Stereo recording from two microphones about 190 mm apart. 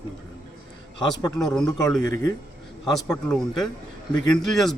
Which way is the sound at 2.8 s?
Centre (ahead or behind).